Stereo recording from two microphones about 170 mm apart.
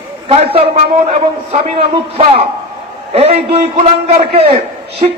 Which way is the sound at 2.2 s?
35° right (ahead or behind).